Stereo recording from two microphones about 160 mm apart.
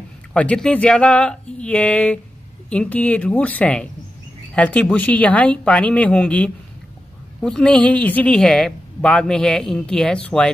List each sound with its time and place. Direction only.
0.3 s a woman's voice: 5° left (ahead or behind)